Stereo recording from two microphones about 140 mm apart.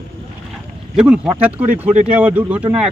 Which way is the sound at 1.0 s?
10° right (ahead or behind).